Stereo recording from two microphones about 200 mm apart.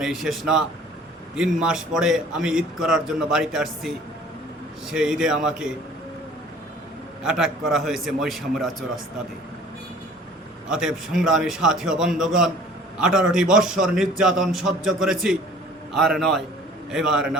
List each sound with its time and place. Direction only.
0.0 s a man's voice: centre (ahead or behind)
7.2 s a man's voice: 5° right (ahead or behind)
10.7 s a man's voice: centre (ahead or behind)